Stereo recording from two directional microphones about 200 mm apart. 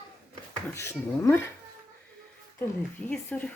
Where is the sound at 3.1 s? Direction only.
5° left (ahead or behind).